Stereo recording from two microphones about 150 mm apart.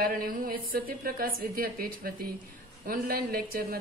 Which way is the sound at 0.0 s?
70° right (ahead or behind).